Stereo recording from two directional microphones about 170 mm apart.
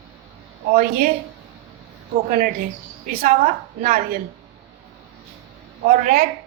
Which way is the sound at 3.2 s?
50° right (ahead or behind).